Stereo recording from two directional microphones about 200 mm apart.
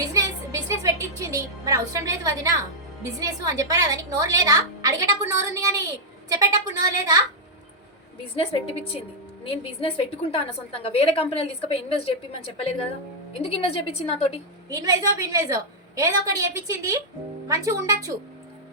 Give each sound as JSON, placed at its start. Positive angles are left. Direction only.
{"t": 0.1, "sound": "music", "side_deg": -15}
{"t": 3.2, "sound": "a woman's voice", "side_deg": -15}
{"t": 8.4, "sound": "a woman's voice", "side_deg": 30}
{"t": 10.8, "sound": "a woman's voice", "side_deg": 30}
{"t": 14.7, "sound": "a woman's voice", "side_deg": -15}